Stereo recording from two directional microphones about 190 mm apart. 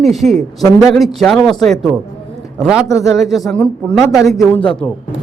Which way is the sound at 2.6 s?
5° right (ahead or behind).